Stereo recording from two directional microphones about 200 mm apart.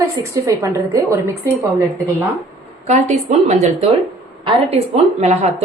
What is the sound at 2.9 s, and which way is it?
A woman's voice, 35° right (ahead or behind).